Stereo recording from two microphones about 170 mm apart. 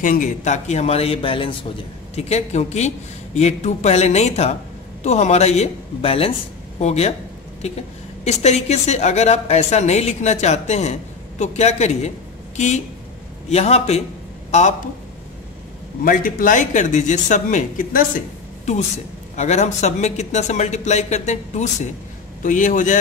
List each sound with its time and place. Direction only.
0.0 s a woman's voice: 50° left (ahead or behind)
8.2 s a woman's voice: 40° left (ahead or behind)
16.0 s speech: 55° left (ahead or behind)
19.3 s speech: 40° left (ahead or behind)